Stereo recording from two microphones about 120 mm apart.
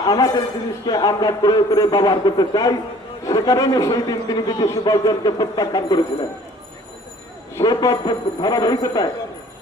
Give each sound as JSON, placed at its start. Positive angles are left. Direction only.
{"t": 0.0, "sound": "a man's voice", "side_deg": 30}
{"t": 7.6, "sound": "a man's voice", "side_deg": 30}